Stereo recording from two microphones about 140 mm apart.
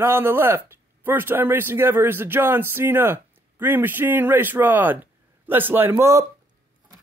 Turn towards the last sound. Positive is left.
turn(degrees=-20)  # may be behind; listen again after turning